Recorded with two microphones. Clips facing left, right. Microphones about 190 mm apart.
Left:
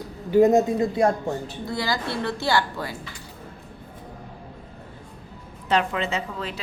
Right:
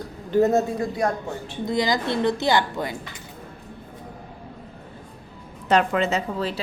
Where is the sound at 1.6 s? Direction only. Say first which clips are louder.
Right 6 dB; 20° right (ahead or behind).